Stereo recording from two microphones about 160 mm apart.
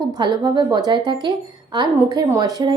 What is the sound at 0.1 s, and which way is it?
A woman's voice, 25° right (ahead or behind).